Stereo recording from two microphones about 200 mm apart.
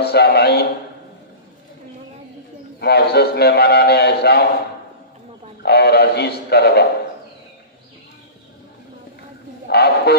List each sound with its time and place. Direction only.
0.0 s a man's voice: 55° left (ahead or behind)
2.8 s a man's voice: 55° left (ahead or behind)
5.6 s a man's voice: 55° left (ahead or behind)
9.7 s a man's voice: 55° left (ahead or behind)